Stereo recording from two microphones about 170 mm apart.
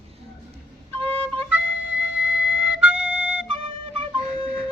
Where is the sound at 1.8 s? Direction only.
90° left.